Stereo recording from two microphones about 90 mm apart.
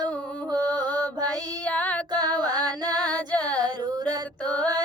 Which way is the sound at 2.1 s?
50° right (ahead or behind).